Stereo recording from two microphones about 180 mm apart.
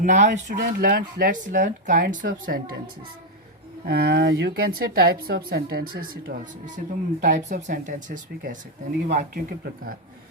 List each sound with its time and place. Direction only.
0.0 s speech: 45° right (ahead or behind)
0.6 s a woman's voice: 60° right (ahead or behind)